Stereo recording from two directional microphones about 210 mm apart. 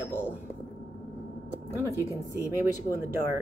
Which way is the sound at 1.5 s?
10° right (ahead or behind).